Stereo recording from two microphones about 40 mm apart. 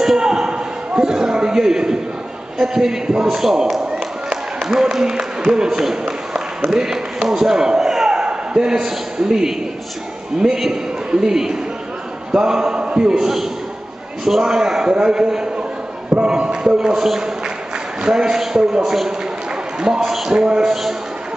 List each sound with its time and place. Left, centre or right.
0.0 s a sound: centre
2.6 s a man's voice: centre
3.9 s a sound: centre
6.7 s a man's voice: centre
12.3 s mantra: centre
13.1 s a man's voice: centre
20.0 s a man's voice: centre